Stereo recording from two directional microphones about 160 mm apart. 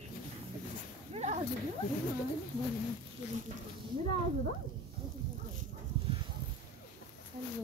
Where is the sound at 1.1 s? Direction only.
45° right (ahead or behind).